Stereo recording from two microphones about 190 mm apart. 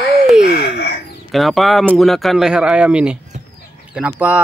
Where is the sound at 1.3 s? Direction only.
Centre (ahead or behind).